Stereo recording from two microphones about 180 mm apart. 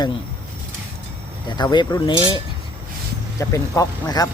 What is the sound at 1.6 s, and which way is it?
Speech, 20° left (ahead or behind).